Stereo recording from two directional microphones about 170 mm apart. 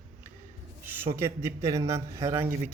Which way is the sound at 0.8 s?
15° right (ahead or behind).